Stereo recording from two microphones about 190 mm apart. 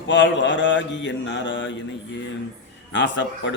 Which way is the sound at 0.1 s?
75° left (ahead or behind).